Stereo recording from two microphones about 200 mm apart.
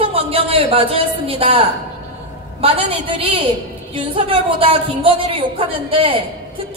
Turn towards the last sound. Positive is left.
turn(degrees=-25)  # may be behind; listen again after turning